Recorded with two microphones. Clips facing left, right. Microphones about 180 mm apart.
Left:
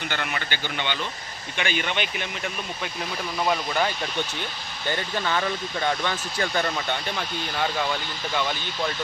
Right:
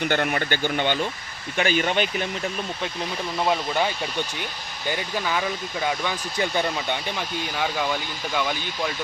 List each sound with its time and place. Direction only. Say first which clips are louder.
0.0 s speech: right 7 dB; 50° right (ahead or behind)
3.3 s speech: right 1 dB; 20° right (ahead or behind)
3.7 s speech: right 1 dB; 10° right (ahead or behind)